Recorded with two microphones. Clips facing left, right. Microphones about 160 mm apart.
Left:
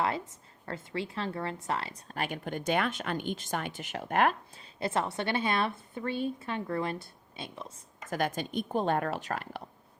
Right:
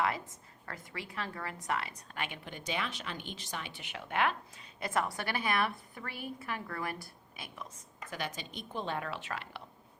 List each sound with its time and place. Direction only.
0.6 s speech: 30° left (ahead or behind); by 4.6 s 45° left (ahead or behind)
4.6 s a woman's voice: 30° left (ahead or behind)
8.1 s speech: 50° left (ahead or behind)